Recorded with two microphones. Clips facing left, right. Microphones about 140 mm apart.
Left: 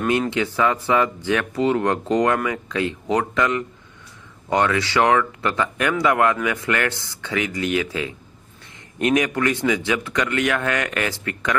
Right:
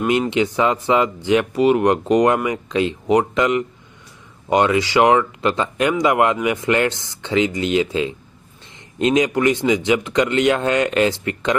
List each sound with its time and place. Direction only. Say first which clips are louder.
0.0 s speech: right 3 dB; 20° right (ahead or behind)